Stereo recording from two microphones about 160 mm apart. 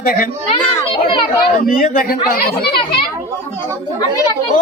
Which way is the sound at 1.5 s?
55° left (ahead or behind).